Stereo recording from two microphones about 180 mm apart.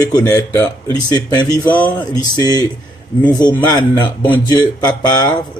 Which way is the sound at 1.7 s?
10° left (ahead or behind).